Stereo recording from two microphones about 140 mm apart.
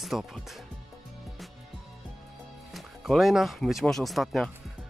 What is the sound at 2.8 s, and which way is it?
Speech, centre (ahead or behind).